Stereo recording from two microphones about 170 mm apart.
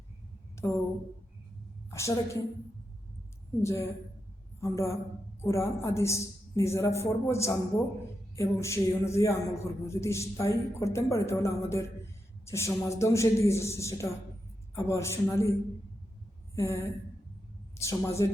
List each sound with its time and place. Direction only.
0.5 s a sound: 15° left (ahead or behind)
1.9 s a woman's voice: 15° left (ahead or behind)
3.6 s a man's voice: 15° left (ahead or behind)
16.6 s a man's voice: 15° left (ahead or behind)